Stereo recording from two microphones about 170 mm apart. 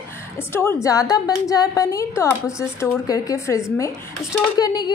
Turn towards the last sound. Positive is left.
turn(degrees=25)  # may be behind; listen again after turning